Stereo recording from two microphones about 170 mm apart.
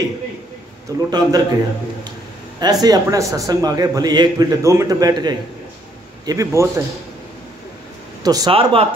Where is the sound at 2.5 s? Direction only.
25° right (ahead or behind).